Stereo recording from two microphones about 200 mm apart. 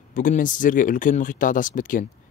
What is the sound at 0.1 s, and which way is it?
Speech, 40° left (ahead or behind).